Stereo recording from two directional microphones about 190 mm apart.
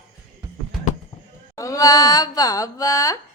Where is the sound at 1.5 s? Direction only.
15° left (ahead or behind).